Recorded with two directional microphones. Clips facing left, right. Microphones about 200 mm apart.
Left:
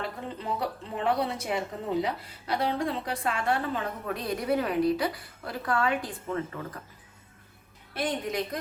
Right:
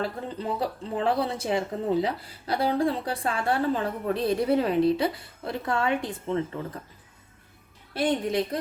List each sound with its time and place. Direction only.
0.0 s speech: 30° right (ahead or behind)
7.9 s speech: 30° right (ahead or behind)